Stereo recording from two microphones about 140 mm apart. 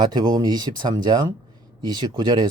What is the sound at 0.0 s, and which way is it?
Speech, 30° right (ahead or behind).